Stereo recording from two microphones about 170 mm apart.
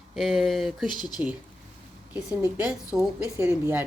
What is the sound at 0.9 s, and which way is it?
Speech, 25° left (ahead or behind).